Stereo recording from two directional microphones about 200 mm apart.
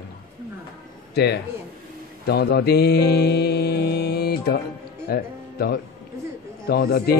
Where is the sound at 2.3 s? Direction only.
55° left (ahead or behind).